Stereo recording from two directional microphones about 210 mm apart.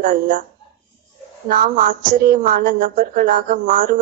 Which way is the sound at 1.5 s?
40° right (ahead or behind).